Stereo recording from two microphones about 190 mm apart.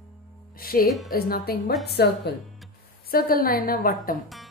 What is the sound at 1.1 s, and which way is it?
A woman's voice, 55° left (ahead or behind).